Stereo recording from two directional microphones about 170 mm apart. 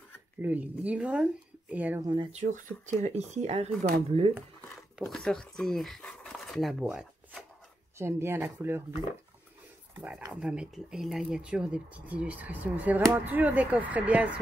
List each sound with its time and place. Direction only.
0.4 s speech: 10° right (ahead or behind)
2.0 s speech: 25° right (ahead or behind)
2.3 s speech: 45° right (ahead or behind)
4.9 s speech: centre (ahead or behind)
8.0 s speech: 15° right (ahead or behind)
9.9 s speech: 5° right (ahead or behind)